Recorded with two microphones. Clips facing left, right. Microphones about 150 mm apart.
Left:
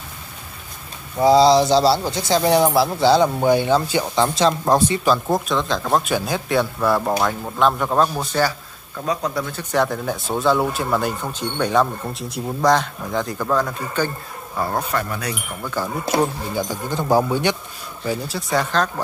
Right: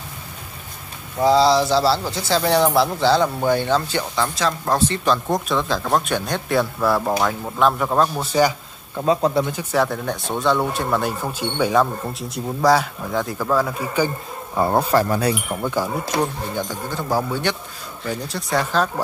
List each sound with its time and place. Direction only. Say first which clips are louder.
1.2 s speech: left 2 dB; 15° left (ahead or behind); by 8.3 s centre (ahead or behind)
8.3 s speech: right 3 dB; 15° right (ahead or behind)
9.6 s speech: even; 5° right (ahead or behind)
14.6 s speech: right 6 dB; 30° right (ahead or behind)
16.2 s speech: left 3 dB; 10° left (ahead or behind)
16.9 s speech: left 5 dB; 20° left (ahead or behind)
18.0 s speech: left 2 dB; centre (ahead or behind)